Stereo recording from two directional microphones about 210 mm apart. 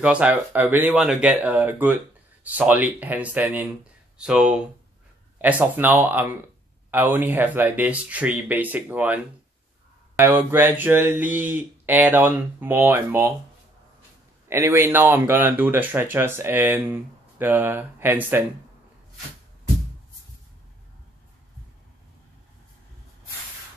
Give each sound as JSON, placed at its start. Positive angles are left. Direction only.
{"t": 0.0, "sound": "speech", "side_deg": -5}
{"t": 14.5, "sound": "speech", "side_deg": -10}